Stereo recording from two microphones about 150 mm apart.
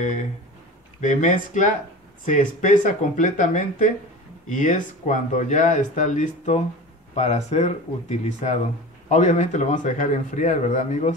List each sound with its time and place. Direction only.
1.0 s speech: 55° left (ahead or behind)